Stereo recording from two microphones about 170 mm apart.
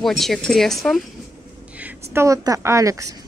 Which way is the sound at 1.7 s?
10° right (ahead or behind).